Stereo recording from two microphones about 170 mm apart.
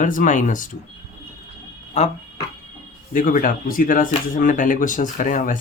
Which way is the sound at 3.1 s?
50° left (ahead or behind).